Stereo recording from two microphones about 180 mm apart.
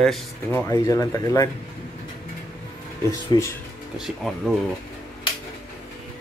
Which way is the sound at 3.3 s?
25° left (ahead or behind).